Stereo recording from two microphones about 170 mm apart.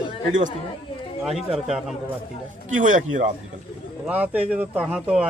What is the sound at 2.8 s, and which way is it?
Speech, 45° right (ahead or behind).